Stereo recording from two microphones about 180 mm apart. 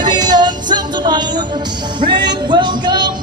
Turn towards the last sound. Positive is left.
turn(degrees=-25)  # may be behind; listen again after turning